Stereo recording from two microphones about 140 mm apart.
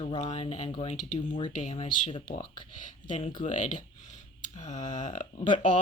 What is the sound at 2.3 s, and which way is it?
Speech, 60° left (ahead or behind).